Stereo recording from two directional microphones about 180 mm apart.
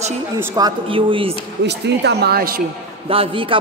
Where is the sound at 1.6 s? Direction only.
70° right (ahead or behind).